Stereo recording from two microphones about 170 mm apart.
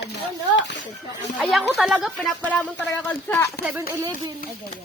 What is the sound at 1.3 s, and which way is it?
Speech, centre (ahead or behind).